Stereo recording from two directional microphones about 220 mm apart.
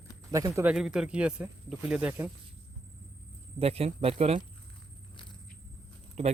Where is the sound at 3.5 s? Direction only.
25° right (ahead or behind).